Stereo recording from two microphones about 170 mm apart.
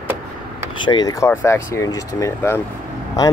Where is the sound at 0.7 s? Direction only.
25° left (ahead or behind).